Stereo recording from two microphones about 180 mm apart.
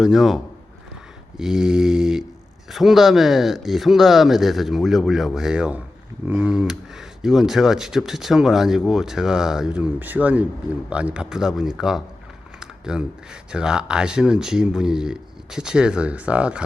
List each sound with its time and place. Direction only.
0.0 s speech: centre (ahead or behind)
1.4 s speech: 5° right (ahead or behind)
12.5 s a sound: 5° right (ahead or behind)
13.5 s speech: 5° right (ahead or behind)